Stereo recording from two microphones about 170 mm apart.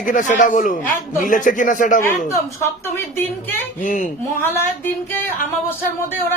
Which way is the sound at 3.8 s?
50° left (ahead or behind).